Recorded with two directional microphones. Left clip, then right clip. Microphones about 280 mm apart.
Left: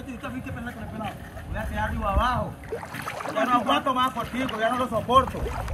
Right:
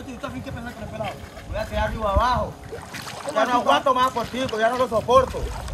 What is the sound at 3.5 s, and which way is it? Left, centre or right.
Speech, centre.